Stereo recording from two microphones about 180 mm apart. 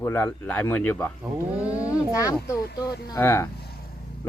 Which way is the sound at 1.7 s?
20° left (ahead or behind).